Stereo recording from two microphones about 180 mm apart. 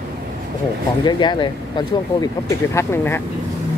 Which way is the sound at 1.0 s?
25° left (ahead or behind).